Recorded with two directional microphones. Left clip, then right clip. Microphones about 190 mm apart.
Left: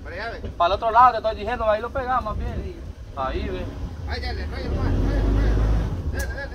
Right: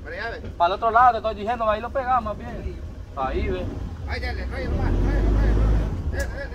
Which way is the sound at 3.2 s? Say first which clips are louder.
Right 1 dB; 30° left (ahead or behind).